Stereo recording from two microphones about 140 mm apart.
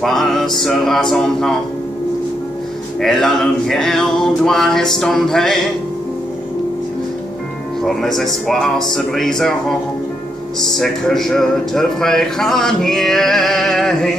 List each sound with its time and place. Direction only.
0.0 s speech: centre (ahead or behind)
3.0 s speech: centre (ahead or behind)
7.8 s speech: centre (ahead or behind)